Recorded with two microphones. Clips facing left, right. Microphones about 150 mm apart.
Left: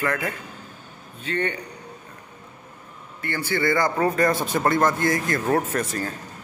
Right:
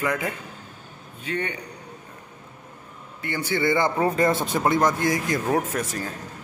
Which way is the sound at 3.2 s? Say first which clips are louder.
Even; 15° right (ahead or behind).